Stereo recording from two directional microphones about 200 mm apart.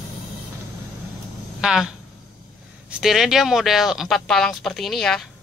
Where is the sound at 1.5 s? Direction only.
5° right (ahead or behind).